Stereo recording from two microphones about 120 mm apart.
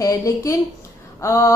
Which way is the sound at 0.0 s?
30° left (ahead or behind).